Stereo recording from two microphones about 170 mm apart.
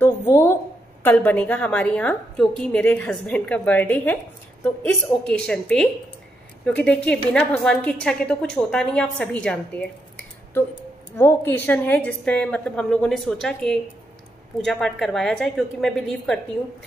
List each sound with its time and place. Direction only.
0.0 s a sound: 15° left (ahead or behind)
1.0 s a woman's voice: 10° left (ahead or behind)
11.1 s a woman's voice: 15° left (ahead or behind)